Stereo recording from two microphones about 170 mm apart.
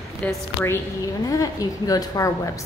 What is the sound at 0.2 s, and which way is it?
Speech, 5° left (ahead or behind).